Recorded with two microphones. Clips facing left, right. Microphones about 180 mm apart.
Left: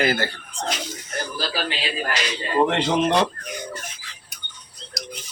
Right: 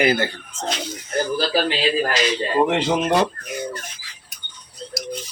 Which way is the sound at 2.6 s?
5° right (ahead or behind).